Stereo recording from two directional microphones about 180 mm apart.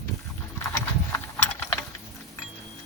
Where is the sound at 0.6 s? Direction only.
15° left (ahead or behind).